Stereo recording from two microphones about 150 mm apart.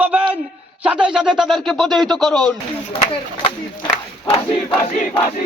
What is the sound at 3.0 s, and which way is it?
Speech, 35° left (ahead or behind).